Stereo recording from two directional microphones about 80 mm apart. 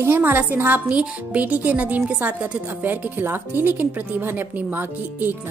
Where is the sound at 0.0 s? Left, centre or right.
Right.